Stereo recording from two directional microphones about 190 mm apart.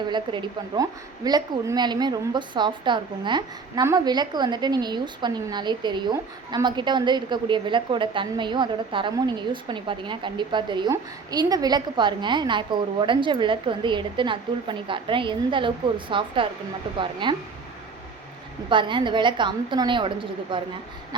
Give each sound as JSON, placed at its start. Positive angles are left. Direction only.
{"t": 0.1, "sound": "a woman's voice", "side_deg": -25}
{"t": 18.7, "sound": "a woman's voice", "side_deg": -25}